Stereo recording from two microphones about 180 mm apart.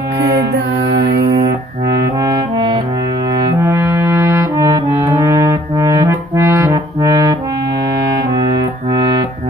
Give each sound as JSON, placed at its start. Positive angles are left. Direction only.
{"t": 0.8, "sound": "mantra", "side_deg": -65}
{"t": 2.2, "sound": "music", "side_deg": -25}
{"t": 3.6, "sound": "music", "side_deg": -15}